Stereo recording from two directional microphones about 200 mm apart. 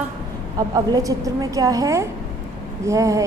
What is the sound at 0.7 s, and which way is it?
A woman's voice, 15° right (ahead or behind).